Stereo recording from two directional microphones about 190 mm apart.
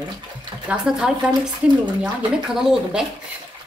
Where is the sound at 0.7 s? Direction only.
5° right (ahead or behind).